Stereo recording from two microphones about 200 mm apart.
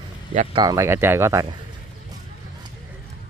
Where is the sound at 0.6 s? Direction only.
15° right (ahead or behind).